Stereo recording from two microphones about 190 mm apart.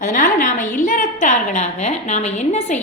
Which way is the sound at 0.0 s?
45° left (ahead or behind).